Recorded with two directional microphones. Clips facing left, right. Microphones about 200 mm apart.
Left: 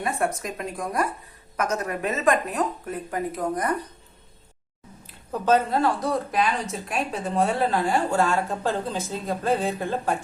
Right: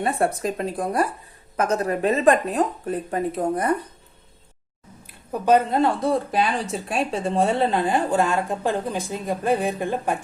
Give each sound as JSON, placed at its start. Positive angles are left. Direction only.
{"t": 0.0, "sound": "speech", "side_deg": -30}
{"t": 5.0, "sound": "speech", "side_deg": -15}